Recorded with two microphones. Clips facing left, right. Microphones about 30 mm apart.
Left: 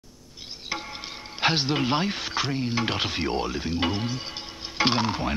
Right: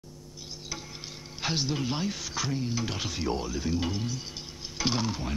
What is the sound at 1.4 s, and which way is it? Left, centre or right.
Speech, left.